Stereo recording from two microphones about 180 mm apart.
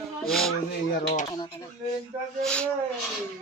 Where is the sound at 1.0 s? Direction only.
60° left (ahead or behind).